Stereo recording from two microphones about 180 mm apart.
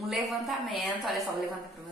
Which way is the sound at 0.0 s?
Centre (ahead or behind).